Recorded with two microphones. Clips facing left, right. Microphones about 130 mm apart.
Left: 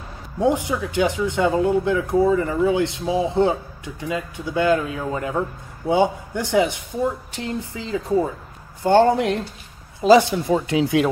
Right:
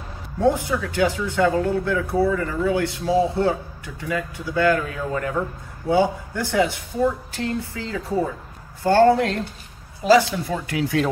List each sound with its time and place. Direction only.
0.4 s speech: 15° left (ahead or behind)